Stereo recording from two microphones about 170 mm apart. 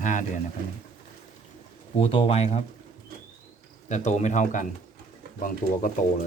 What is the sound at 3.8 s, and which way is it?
Speech, 45° left (ahead or behind).